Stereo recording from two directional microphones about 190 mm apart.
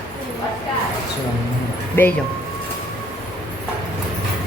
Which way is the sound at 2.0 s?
10° left (ahead or behind).